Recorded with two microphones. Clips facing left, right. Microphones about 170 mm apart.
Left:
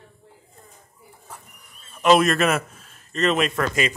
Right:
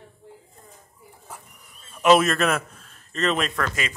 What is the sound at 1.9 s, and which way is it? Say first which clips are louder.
A man's voice: left 1 dB; 5° right (ahead or behind).